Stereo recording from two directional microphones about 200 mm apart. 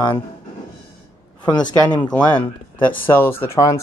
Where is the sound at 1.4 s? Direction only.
20° left (ahead or behind).